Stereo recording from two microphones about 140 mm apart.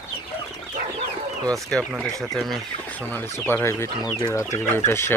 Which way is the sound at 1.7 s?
5° left (ahead or behind).